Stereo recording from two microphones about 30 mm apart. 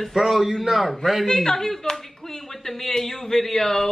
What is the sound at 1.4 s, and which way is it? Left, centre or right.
A woman's voice, centre.